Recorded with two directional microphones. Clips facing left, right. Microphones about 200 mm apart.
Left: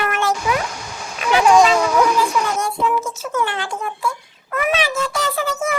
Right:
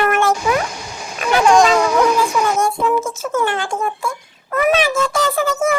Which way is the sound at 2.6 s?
50° right (ahead or behind).